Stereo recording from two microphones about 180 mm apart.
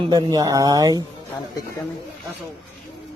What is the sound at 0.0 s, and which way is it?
Speech, 20° right (ahead or behind).